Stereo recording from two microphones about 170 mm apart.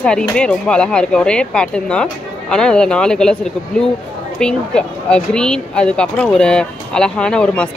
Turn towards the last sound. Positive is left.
turn(degrees=5)  # may be behind; listen again after turning